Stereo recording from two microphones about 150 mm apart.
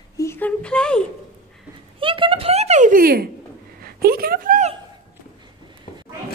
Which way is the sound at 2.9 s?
80° right.